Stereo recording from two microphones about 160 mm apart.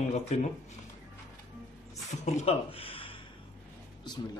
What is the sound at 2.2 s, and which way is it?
Speech, 40° left (ahead or behind).